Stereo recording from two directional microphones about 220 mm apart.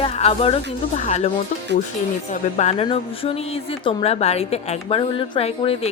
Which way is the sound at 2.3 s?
30° left (ahead or behind).